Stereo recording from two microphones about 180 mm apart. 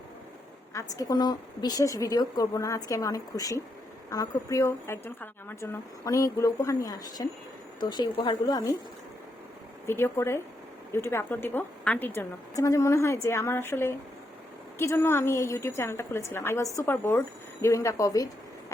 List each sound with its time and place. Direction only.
0.7 s a woman's voice: 20° left (ahead or behind)
9.8 s a woman's voice: 15° left (ahead or behind)